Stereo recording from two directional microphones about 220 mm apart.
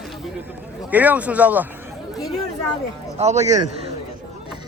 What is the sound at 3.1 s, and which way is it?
Speech, 30° right (ahead or behind).